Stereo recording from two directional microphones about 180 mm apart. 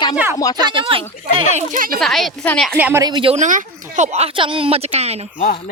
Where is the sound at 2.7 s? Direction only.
10° right (ahead or behind).